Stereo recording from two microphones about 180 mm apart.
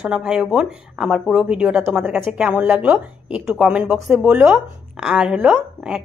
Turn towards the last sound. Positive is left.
turn(degrees=-5)  # may be behind; listen again after turning